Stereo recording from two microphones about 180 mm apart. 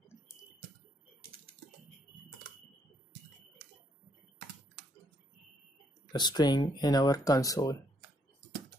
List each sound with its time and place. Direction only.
6.1 s speech: 25° left (ahead or behind)